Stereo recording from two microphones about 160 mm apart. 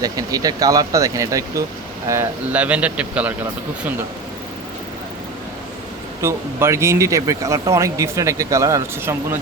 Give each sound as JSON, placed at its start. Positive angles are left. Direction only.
{"t": 0.0, "sound": "speech", "side_deg": -20}
{"t": 6.2, "sound": "speech", "side_deg": -15}